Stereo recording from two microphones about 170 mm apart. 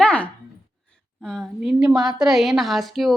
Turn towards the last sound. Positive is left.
turn(degrees=0)  # may be behind; listen again after turning